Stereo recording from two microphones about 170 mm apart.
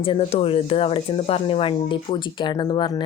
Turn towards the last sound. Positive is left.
turn(degrees=25)  # may be behind; listen again after turning